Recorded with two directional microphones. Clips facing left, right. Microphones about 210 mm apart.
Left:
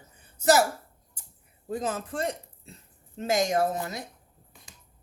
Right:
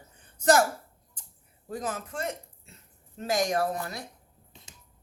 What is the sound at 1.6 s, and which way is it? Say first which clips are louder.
Speech: left 3 dB; 25° left (ahead or behind).